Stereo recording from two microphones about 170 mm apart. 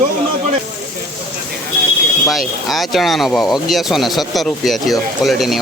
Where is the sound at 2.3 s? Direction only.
Centre (ahead or behind).